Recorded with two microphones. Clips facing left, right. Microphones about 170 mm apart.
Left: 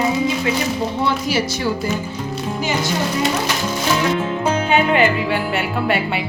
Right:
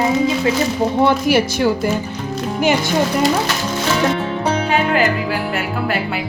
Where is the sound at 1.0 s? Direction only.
55° right (ahead or behind).